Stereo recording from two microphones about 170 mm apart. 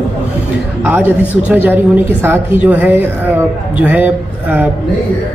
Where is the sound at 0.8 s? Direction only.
10° right (ahead or behind).